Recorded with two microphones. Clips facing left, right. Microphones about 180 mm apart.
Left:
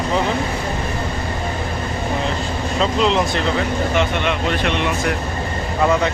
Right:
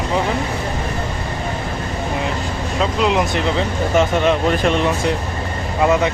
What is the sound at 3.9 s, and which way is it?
Speech, 40° right (ahead or behind).